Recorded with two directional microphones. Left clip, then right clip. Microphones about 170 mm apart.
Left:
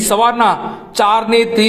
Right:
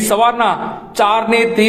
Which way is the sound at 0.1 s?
35° left (ahead or behind).